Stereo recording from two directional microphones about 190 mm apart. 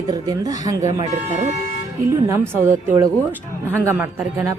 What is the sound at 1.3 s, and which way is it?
Speech, 35° right (ahead or behind).